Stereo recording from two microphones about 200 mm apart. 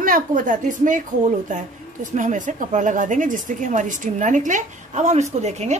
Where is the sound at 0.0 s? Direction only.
45° right (ahead or behind).